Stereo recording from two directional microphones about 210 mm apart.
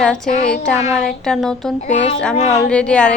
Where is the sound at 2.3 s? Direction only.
30° left (ahead or behind).